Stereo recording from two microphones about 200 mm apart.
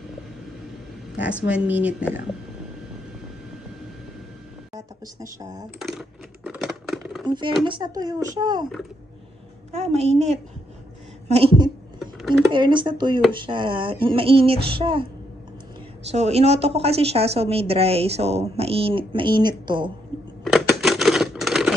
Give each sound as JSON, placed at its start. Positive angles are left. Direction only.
{"t": 1.5, "sound": "speech", "side_deg": -5}
{"t": 4.7, "sound": "speech", "side_deg": -15}
{"t": 5.8, "sound": "typing", "side_deg": 0}
{"t": 7.2, "sound": "a woman's voice", "side_deg": -20}
{"t": 9.9, "sound": "a woman's voice", "side_deg": -35}
{"t": 12.0, "sound": "a sound", "side_deg": 0}
{"t": 12.5, "sound": "a woman's voice", "side_deg": -25}
{"t": 16.1, "sound": "a woman's voice", "side_deg": -30}
{"t": 20.4, "sound": "a sound", "side_deg": 0}